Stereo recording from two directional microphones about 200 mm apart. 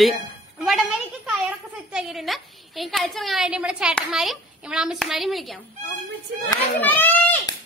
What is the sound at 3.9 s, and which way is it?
A child's voice, centre (ahead or behind).